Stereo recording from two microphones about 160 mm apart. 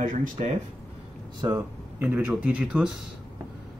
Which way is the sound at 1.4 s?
15° right (ahead or behind).